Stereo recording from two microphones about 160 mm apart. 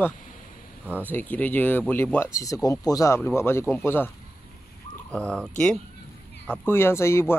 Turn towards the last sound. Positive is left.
turn(degrees=15)  # may be behind; listen again after turning